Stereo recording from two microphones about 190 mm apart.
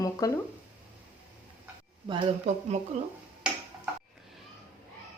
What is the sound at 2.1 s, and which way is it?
Speech, 30° right (ahead or behind).